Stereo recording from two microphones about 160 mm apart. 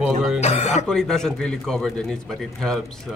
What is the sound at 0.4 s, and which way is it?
Speech, 45° left (ahead or behind).